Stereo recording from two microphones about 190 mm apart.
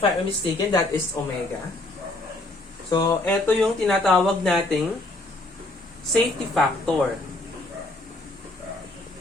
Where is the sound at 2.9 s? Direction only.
25° left (ahead or behind).